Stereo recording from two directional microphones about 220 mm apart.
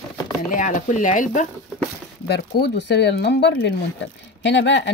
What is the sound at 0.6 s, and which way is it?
Speech, 35° left (ahead or behind).